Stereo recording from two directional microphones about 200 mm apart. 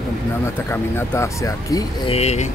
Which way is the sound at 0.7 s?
10° left (ahead or behind).